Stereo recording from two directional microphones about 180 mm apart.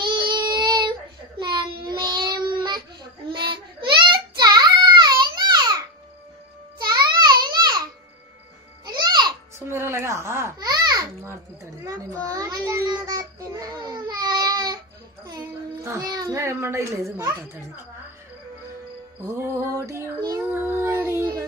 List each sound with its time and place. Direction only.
0.3 s child singing: 25° right (ahead or behind)
3.3 s a sound: 25° right (ahead or behind)
6.8 s music: 25° right (ahead or behind)
7.4 s a sound: 25° right (ahead or behind)
8.8 s music: 25° right (ahead or behind)
9.7 s babbling: 15° right (ahead or behind)
11.8 s child singing: 20° right (ahead or behind)
15.2 s a sound: 20° right (ahead or behind)
17.2 s a child's voice: 15° right (ahead or behind)
19.2 s child singing: 15° right (ahead or behind)